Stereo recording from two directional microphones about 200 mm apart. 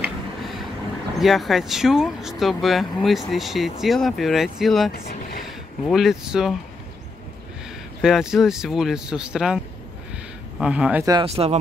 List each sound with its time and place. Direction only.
0.0 s a sound: centre (ahead or behind)
1.2 s speech: centre (ahead or behind)
8.0 s speech: centre (ahead or behind)
10.6 s speech: 5° right (ahead or behind)
11.1 s speech: 25° right (ahead or behind)